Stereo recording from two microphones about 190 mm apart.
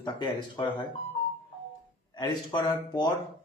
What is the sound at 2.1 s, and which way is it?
Speech, 20° left (ahead or behind).